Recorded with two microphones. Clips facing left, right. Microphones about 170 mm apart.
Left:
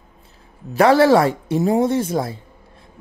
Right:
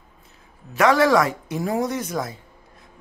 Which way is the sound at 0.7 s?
30° left (ahead or behind).